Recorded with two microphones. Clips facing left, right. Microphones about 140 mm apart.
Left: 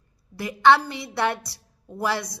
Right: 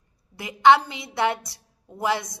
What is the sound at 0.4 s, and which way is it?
Speech, 20° right (ahead or behind).